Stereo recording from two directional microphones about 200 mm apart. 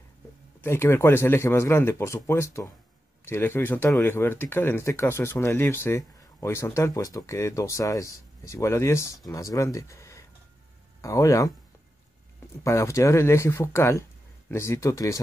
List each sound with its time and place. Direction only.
0.6 s speech: 10° left (ahead or behind)
12.6 s speech: 15° left (ahead or behind)